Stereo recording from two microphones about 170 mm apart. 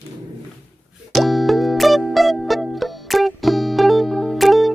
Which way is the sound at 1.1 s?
Centre (ahead or behind).